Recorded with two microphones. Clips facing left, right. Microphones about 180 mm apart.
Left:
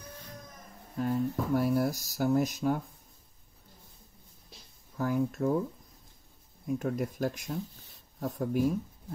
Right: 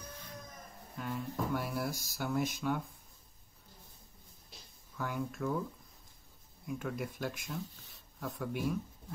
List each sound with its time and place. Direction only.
0.9 s speech: 40° left (ahead or behind)
4.9 s speech: 35° left (ahead or behind)
6.6 s speech: 40° left (ahead or behind)